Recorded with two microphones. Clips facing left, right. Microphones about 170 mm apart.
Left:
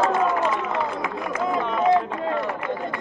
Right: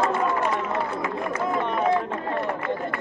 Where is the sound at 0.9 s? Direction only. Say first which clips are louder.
Even; 90° left.